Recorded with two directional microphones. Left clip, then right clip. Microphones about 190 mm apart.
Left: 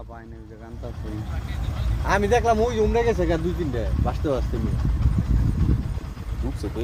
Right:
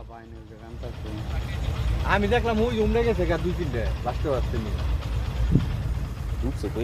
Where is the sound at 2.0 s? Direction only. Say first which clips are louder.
Left 4 dB; 50° left (ahead or behind).